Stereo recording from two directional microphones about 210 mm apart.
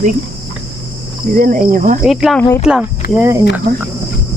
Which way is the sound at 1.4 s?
40° right (ahead or behind).